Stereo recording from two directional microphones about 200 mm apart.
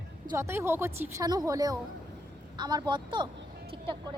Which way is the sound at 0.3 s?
15° right (ahead or behind).